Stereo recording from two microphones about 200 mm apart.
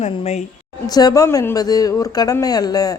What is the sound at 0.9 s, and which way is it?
Speech, 20° left (ahead or behind).